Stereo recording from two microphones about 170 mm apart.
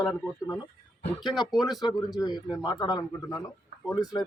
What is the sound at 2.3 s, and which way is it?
Speech, centre (ahead or behind).